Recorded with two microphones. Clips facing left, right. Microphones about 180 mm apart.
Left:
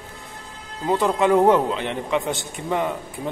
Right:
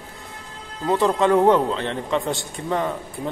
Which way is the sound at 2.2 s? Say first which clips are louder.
Right 1 dB; centre (ahead or behind).